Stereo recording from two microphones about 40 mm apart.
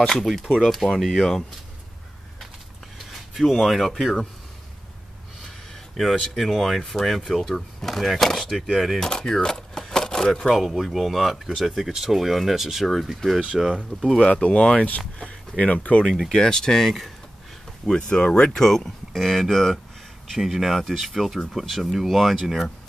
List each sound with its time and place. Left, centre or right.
0.0 s speech: centre
3.1 s a sound: centre
3.5 s speech: centre
5.9 s speech: centre
9.0 s a sound: centre
10.5 s speech: centre
14.3 s speech: left
16.3 s speech: centre
18.1 s speech: left
18.8 s speech: centre